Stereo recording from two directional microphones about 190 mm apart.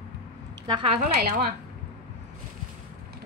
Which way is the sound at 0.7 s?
30° right (ahead or behind).